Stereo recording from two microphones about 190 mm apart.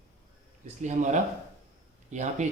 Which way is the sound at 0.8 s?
40° right (ahead or behind).